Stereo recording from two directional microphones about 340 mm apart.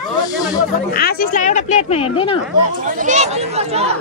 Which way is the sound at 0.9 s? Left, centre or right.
Left.